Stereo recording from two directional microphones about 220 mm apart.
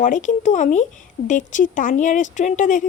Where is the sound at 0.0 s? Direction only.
35° left (ahead or behind).